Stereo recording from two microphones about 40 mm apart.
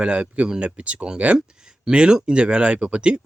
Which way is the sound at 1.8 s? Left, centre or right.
Right.